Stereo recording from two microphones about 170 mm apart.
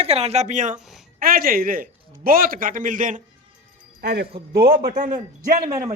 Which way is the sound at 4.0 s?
75° right (ahead or behind).